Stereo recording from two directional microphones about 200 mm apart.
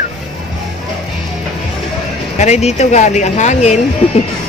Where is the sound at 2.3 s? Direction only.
35° left (ahead or behind).